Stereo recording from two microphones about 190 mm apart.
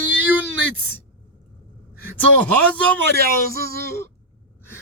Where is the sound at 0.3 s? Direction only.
90° right.